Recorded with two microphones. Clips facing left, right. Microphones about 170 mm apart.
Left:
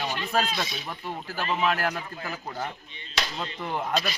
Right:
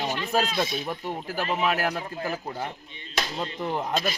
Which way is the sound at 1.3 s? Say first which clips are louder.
Even; 10° right (ahead or behind).